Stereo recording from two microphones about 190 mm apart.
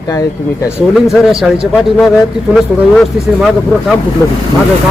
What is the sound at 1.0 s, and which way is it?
Speech, centre (ahead or behind).